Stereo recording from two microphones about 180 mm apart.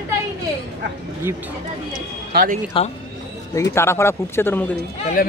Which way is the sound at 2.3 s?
60° right (ahead or behind).